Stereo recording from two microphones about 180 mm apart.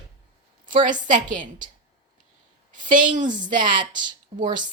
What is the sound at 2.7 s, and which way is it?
Speech, 45° right (ahead or behind).